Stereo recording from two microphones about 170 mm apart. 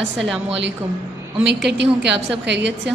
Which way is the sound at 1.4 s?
90° right.